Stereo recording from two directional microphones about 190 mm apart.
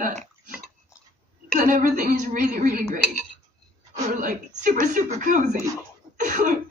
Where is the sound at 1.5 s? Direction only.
45° right (ahead or behind).